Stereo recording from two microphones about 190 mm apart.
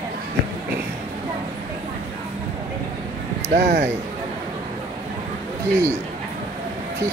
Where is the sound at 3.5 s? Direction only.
40° right (ahead or behind).